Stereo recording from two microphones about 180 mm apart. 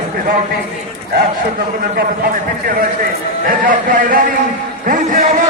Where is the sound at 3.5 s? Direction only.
50° right (ahead or behind).